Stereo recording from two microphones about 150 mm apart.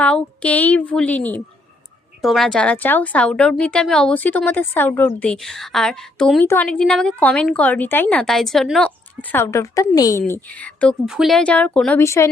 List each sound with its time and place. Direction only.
0.0 s a woman's voice: 10° left (ahead or behind)
9.3 s a woman's voice: 15° left (ahead or behind)
11.0 s a woman's voice: centre (ahead or behind); by 12.3 s 20° left (ahead or behind)